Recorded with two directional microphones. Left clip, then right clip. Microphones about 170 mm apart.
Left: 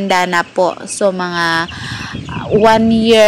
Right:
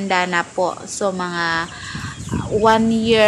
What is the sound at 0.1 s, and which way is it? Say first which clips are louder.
Speech: left 5 dB; 40° left (ahead or behind).